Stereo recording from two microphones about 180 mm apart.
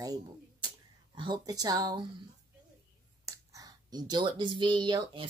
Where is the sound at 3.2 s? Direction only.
20° right (ahead or behind).